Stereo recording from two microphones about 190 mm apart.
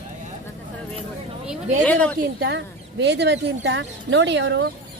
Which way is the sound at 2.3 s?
65° right (ahead or behind).